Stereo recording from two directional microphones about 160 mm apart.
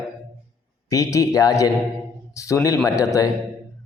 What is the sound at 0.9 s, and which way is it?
A man's voice, 20° left (ahead or behind).